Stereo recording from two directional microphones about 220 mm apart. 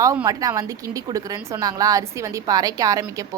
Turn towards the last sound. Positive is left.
turn(degrees=-15)  # may be behind; listen again after turning